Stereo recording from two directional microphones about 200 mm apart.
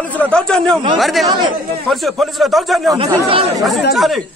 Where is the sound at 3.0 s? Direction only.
25° right (ahead or behind).